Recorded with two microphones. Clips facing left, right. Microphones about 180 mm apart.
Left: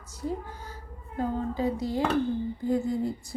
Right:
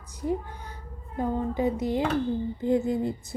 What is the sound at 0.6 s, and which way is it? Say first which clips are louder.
A child's voice: even; 20° right (ahead or behind).